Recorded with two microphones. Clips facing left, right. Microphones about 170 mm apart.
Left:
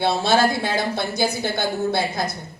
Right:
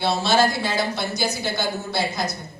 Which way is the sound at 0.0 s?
55° left (ahead or behind).